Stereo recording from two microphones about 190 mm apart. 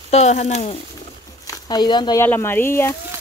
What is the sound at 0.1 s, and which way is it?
Speech, 35° left (ahead or behind).